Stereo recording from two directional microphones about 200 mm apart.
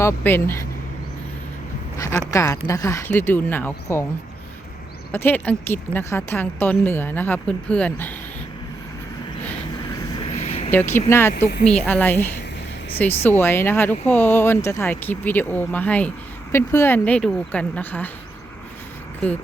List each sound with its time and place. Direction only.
0.0 s speech: 10° left (ahead or behind)
2.0 s speech: 10° left (ahead or behind)
5.1 s speech: 10° left (ahead or behind)
10.3 s vehicle: 30° left (ahead or behind)
10.7 s speech: 10° left (ahead or behind)
11.3 s speech: 50° left (ahead or behind)
11.7 s speech: 5° left (ahead or behind)